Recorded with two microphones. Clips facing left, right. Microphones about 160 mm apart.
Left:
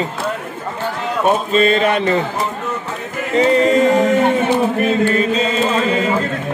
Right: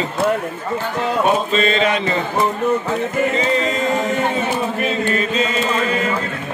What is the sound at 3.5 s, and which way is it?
Music, 65° left (ahead or behind).